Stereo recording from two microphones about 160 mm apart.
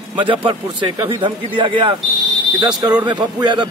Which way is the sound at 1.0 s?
30° right (ahead or behind).